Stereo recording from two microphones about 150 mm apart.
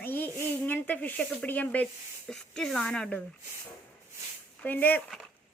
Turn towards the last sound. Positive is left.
turn(degrees=10)  # may be behind; listen again after turning